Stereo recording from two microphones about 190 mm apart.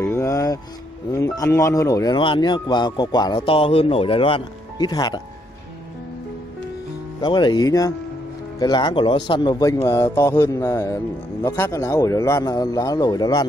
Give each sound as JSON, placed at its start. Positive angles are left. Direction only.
{"t": 0.0, "sound": "music", "side_deg": 15}
{"t": 1.1, "sound": "speech", "side_deg": 15}
{"t": 7.2, "sound": "speech", "side_deg": 20}
{"t": 9.8, "sound": "mantra", "side_deg": 15}
{"t": 11.4, "sound": "speech", "side_deg": 15}